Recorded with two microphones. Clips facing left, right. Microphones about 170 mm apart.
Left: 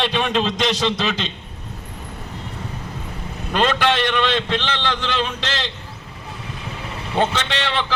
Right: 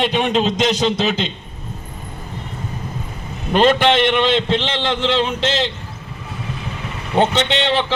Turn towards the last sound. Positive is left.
turn(degrees=-25)  # may be behind; listen again after turning